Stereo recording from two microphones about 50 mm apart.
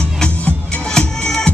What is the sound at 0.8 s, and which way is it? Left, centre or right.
Music, centre.